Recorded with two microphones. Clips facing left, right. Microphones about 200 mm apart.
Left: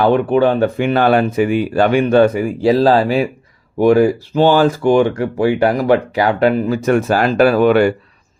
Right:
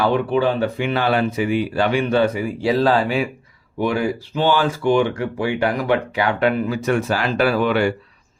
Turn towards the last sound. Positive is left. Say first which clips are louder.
# left 7 dB
turn(degrees=45)  # may be behind; listen again after turning